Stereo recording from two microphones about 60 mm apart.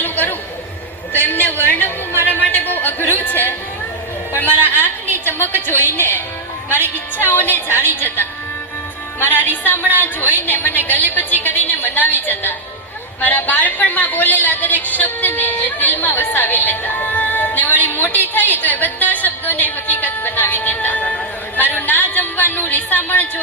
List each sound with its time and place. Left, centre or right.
0.0 s chatter: left
1.1 s a sound: left
4.3 s a man's voice: left
4.8 s a sound: left
5.5 s a woman's voice: left
6.7 s a woman's voice: right
7.2 s a woman's voice: left